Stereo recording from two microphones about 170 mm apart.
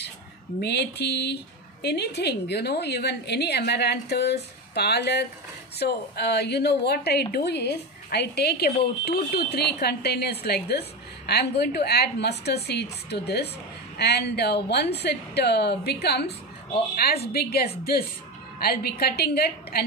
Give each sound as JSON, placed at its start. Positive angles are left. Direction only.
{"t": 0.6, "sound": "a woman's voice", "side_deg": 75}